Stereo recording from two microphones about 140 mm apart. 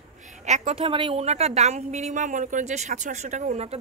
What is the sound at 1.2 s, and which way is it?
Speech, 50° right (ahead or behind).